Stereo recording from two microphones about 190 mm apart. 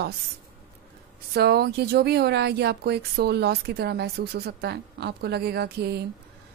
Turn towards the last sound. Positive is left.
turn(degrees=-60)  # may be behind; listen again after turning